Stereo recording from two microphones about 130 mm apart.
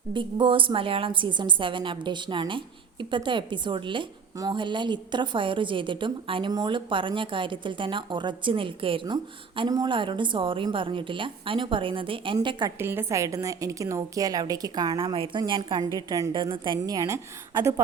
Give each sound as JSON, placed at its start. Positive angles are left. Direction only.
{"t": 0.1, "sound": "a woman's voice", "side_deg": -40}
{"t": 12.8, "sound": "a woman's voice", "side_deg": -15}
{"t": 16.7, "sound": "a woman's voice", "side_deg": -30}